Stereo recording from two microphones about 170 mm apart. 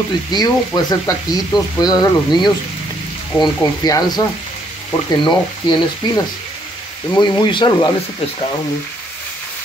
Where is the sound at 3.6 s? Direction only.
20° left (ahead or behind).